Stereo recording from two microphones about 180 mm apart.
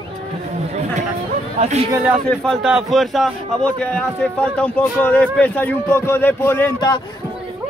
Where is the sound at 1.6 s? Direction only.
35° right (ahead or behind).